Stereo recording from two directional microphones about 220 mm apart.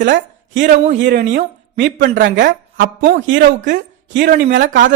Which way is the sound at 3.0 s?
35° right (ahead or behind).